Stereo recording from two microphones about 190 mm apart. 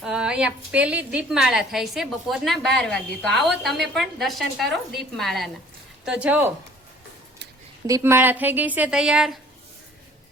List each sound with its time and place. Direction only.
0.0 s a woman's voice: 5° right (ahead or behind)
7.9 s a woman's voice: 15° right (ahead or behind)